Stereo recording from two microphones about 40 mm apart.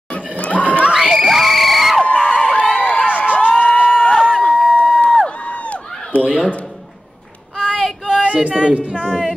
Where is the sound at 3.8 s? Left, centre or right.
Centre.